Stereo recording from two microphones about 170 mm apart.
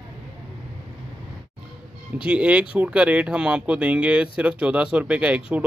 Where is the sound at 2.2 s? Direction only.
5° right (ahead or behind).